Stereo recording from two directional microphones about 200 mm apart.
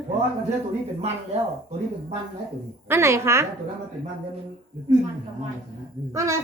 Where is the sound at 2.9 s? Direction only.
15° right (ahead or behind).